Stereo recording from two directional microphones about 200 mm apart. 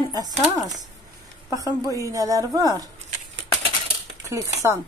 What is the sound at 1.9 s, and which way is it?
Speech, 15° right (ahead or behind).